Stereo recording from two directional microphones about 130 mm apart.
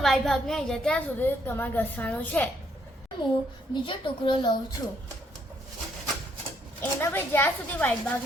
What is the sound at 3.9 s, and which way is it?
Speech, 40° left (ahead or behind).